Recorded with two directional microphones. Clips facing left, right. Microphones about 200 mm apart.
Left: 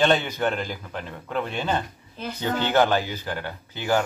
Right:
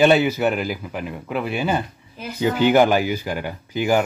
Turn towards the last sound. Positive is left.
turn(degrees=-10)  # may be behind; listen again after turning